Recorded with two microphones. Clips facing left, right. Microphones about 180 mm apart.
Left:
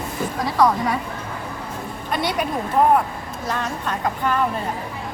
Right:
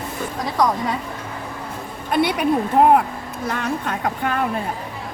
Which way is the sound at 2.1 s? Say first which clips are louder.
Right 4 dB; 60° right (ahead or behind).